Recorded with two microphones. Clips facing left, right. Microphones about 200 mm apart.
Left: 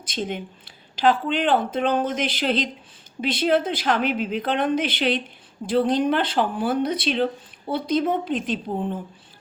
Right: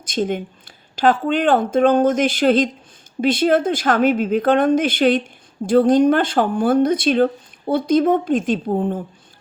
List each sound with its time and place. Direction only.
0.0 s a woman's voice: 45° right (ahead or behind)